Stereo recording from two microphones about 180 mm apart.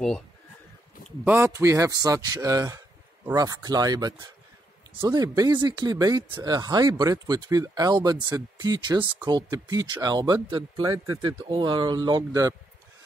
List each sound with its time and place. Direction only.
1.2 s speech: 10° right (ahead or behind)